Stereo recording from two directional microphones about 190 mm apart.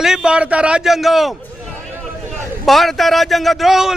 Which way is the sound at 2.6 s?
Centre (ahead or behind).